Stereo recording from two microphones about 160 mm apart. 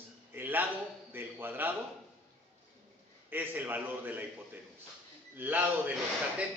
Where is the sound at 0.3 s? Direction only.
10° right (ahead or behind).